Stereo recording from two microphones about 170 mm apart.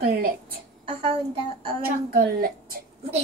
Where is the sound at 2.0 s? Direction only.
65° right (ahead or behind).